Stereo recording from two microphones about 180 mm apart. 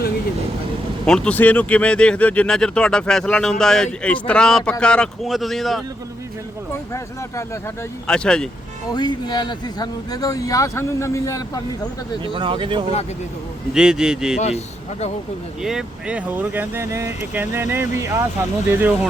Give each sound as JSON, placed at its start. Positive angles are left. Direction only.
{"t": 1.0, "sound": "speech", "side_deg": 5}
{"t": 6.9, "sound": "speech", "side_deg": 15}
{"t": 8.0, "sound": "speech", "side_deg": 5}
{"t": 8.9, "sound": "speech", "side_deg": 25}
{"t": 12.2, "sound": "speech", "side_deg": -30}
{"t": 13.7, "sound": "speech", "side_deg": -5}
{"t": 14.3, "sound": "speech", "side_deg": 40}
{"t": 15.6, "sound": "speech", "side_deg": -5}